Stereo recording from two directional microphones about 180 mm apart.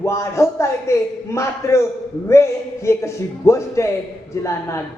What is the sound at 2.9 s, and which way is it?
Speech, 15° left (ahead or behind).